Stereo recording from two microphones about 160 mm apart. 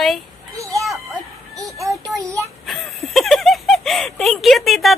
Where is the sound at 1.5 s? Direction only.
20° right (ahead or behind).